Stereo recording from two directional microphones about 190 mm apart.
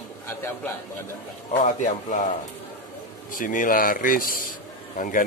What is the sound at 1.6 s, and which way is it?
Speech, 45° left (ahead or behind).